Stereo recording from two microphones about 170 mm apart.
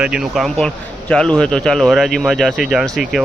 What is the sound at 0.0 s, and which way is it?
Speech, 5° right (ahead or behind).